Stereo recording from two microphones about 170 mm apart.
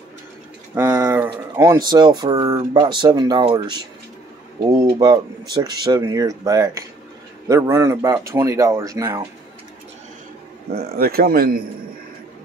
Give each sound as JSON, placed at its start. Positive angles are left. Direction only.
{"t": 1.0, "sound": "a sound", "side_deg": -10}
{"t": 1.9, "sound": "speech", "side_deg": -25}
{"t": 10.7, "sound": "a man's voice", "side_deg": -65}